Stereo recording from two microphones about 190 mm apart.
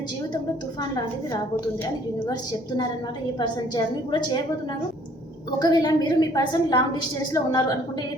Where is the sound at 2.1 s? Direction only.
20° left (ahead or behind).